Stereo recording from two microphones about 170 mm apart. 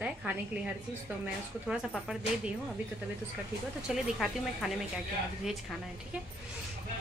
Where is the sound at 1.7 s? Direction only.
5° right (ahead or behind).